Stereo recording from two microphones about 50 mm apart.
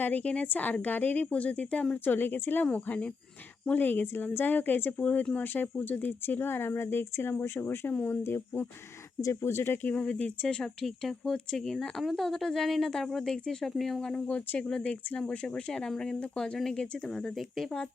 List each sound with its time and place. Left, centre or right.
0.0 s a woman's voice: left
2.0 s a woman's voice: left
2.7 s a woman's voice: left
9.2 s speech: left
9.9 s speech: left
13.7 s speech: centre
14.0 s speech: centre
14.3 s a woman's voice: left
14.7 s speech: left